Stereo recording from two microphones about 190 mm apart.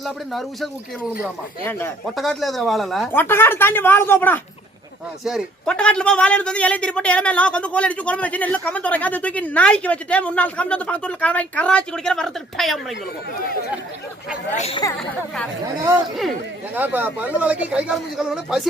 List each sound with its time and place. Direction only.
0.0 s speech: centre (ahead or behind)
2.0 s speech: centre (ahead or behind)
3.1 s a man's voice: 10° left (ahead or behind)
5.2 s a man's voice: centre (ahead or behind)
14.5 s a woman's voice: 35° left (ahead or behind)
16.7 s speech: 10° right (ahead or behind)